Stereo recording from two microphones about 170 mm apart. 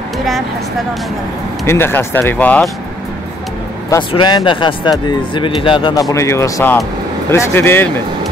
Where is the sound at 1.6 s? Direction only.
15° left (ahead or behind).